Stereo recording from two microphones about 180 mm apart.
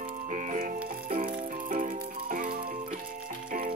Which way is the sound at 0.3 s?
45° right (ahead or behind).